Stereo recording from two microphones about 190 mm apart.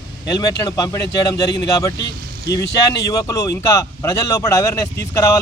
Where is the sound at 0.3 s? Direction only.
20° left (ahead or behind).